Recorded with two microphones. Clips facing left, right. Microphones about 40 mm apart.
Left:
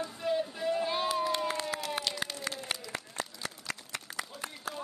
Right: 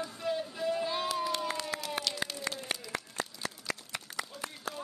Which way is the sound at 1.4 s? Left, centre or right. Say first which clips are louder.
Left 2 dB; left.